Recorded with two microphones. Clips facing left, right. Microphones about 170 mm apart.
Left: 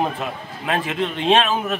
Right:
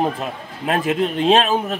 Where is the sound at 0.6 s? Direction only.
40° right (ahead or behind).